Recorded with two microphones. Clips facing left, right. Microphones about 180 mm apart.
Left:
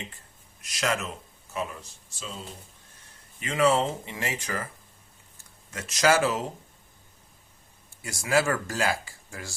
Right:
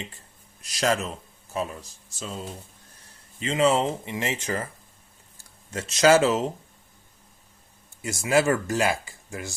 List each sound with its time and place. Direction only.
0.6 s speech: 35° right (ahead or behind)
3.4 s speech: 25° right (ahead or behind)
5.7 s speech: 30° right (ahead or behind)
8.0 s speech: 20° right (ahead or behind)